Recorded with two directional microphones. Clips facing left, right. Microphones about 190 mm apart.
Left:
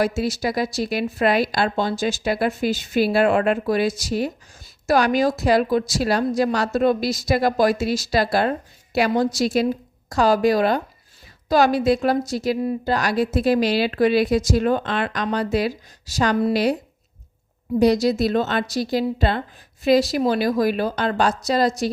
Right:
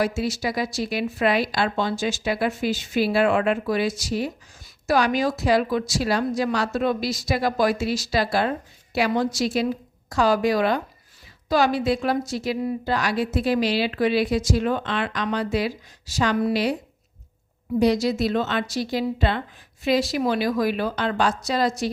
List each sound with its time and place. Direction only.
0.0 s a woman's voice: 40° left (ahead or behind)
17.7 s a woman's voice: 40° left (ahead or behind)